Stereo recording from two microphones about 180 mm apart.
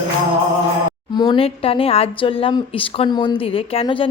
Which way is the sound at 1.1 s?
30° left (ahead or behind).